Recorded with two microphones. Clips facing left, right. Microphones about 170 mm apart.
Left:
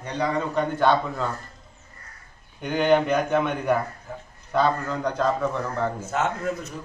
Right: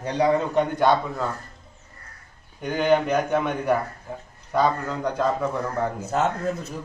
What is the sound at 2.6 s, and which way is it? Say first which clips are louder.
A man's voice: even; 5° right (ahead or behind).